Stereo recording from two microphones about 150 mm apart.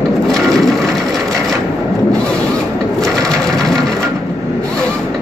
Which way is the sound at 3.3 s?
Centre (ahead or behind).